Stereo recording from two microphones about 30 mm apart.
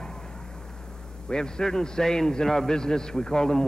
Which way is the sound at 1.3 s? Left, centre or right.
Left.